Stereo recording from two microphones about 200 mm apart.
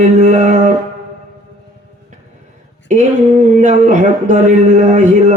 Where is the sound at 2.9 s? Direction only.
35° right (ahead or behind).